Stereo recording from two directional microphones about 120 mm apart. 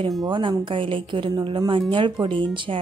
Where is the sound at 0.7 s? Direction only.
45° right (ahead or behind).